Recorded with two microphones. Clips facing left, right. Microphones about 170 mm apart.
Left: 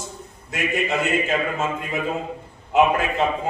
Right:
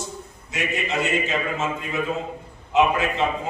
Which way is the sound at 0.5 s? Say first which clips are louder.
Left 3 dB; 55° left (ahead or behind).